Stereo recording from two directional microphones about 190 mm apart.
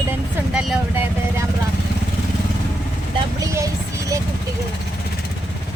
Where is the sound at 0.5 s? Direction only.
10° right (ahead or behind).